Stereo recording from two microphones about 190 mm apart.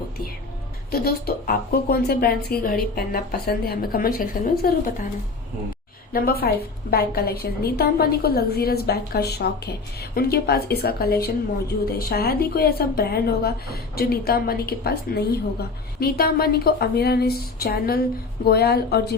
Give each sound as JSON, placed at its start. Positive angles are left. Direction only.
{"t": 0.9, "sound": "speech", "side_deg": 55}
{"t": 6.1, "sound": "a woman's voice", "side_deg": 50}